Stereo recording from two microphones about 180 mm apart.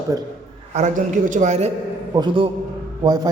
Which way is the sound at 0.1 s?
20° right (ahead or behind).